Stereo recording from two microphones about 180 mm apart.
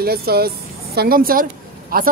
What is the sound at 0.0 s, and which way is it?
Speech, 60° right (ahead or behind).